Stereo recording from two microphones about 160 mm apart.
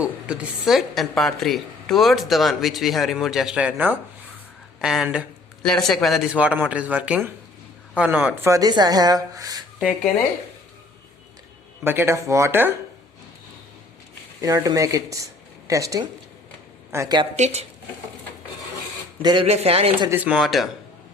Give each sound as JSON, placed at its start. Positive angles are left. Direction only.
{"t": 0.0, "sound": "a woman's voice", "side_deg": -5}
{"t": 8.4, "sound": "speech", "side_deg": -20}
{"t": 11.8, "sound": "a man's voice", "side_deg": -15}
{"t": 14.4, "sound": "speech", "side_deg": -20}
{"t": 17.3, "sound": "speech", "side_deg": -45}
{"t": 19.2, "sound": "speech", "side_deg": -30}
{"t": 19.5, "sound": "a man's voice", "side_deg": -40}
{"t": 20.1, "sound": "a woman's voice", "side_deg": -10}